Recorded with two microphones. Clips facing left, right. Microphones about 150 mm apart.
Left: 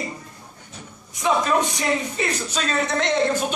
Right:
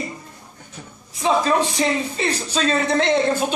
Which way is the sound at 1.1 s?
30° right (ahead or behind).